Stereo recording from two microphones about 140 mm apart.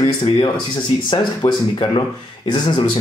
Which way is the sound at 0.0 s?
40° left (ahead or behind).